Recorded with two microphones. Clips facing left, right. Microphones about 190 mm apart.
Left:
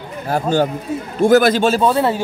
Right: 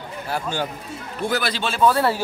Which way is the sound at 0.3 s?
45° left (ahead or behind).